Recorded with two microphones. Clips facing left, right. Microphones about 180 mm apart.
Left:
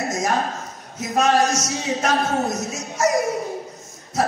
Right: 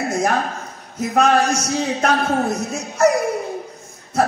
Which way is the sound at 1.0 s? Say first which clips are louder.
Right 2 dB; 60° right (ahead or behind).